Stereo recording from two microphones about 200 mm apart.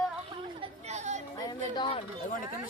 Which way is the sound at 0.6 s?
35° right (ahead or behind).